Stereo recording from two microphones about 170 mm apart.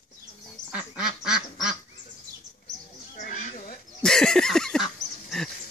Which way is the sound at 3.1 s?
45° left (ahead or behind).